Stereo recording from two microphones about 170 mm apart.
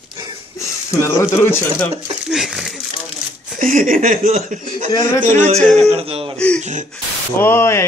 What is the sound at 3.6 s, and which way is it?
Speech, 50° right (ahead or behind).